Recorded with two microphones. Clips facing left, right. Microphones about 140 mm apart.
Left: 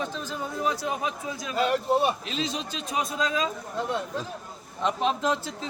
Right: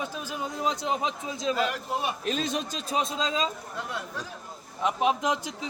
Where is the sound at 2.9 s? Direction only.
25° right (ahead or behind).